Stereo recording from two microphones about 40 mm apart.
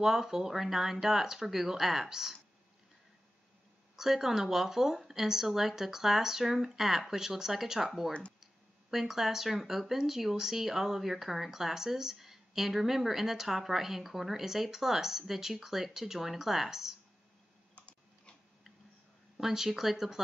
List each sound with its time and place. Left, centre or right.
0.0 s speech: centre
3.9 s speech: centre
8.9 s speech: centre
19.3 s speech: centre